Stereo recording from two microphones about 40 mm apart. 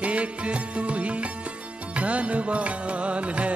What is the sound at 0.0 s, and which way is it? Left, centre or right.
Music, right.